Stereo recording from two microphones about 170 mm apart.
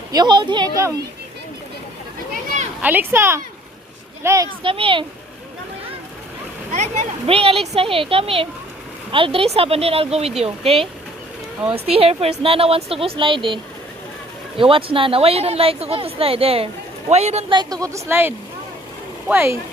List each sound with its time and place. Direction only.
0.1 s speech: 25° right (ahead or behind)
2.8 s speech: 10° right (ahead or behind)
4.6 s speech: 30° right (ahead or behind)
6.7 s speech: 45° right (ahead or behind)
17.5 s speech: 25° right (ahead or behind)